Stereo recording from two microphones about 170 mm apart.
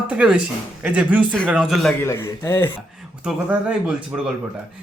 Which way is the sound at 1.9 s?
15° left (ahead or behind).